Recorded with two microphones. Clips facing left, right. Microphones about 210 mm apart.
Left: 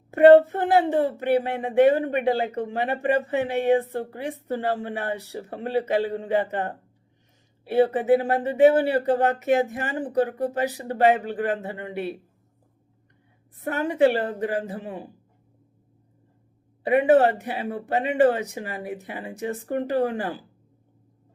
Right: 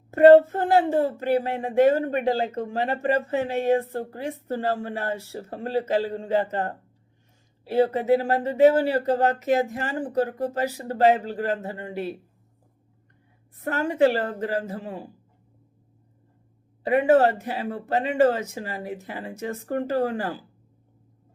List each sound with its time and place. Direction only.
0.1 s speech: 15° left (ahead or behind)
13.6 s speech: 15° left (ahead or behind)
16.8 s speech: 15° left (ahead or behind)